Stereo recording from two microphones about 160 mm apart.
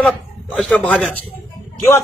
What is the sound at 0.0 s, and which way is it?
A man's voice, 5° left (ahead or behind).